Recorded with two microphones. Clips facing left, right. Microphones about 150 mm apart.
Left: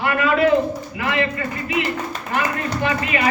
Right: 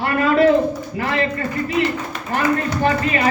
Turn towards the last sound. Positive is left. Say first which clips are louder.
# right 3 dB
turn(degrees=-40)  # may be behind; listen again after turning